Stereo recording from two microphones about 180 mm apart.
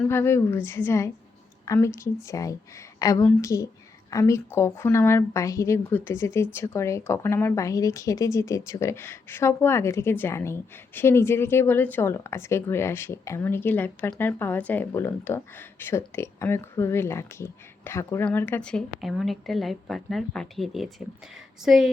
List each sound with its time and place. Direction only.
0.0 s a woman's voice: 15° left (ahead or behind)